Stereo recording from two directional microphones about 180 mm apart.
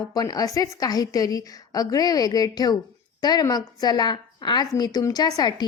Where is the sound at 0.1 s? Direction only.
20° left (ahead or behind).